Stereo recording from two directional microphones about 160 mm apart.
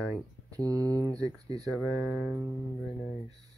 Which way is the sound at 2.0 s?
10° right (ahead or behind).